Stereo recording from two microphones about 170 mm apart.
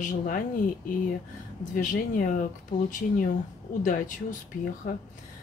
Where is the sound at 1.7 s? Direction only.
50° left (ahead or behind).